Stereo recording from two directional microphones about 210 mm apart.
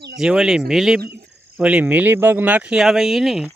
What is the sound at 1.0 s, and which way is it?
Speech, 50° right (ahead or behind).